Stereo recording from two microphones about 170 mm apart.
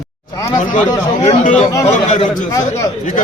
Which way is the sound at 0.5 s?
45° left (ahead or behind).